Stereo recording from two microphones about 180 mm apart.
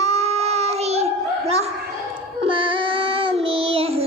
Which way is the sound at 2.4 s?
30° right (ahead or behind).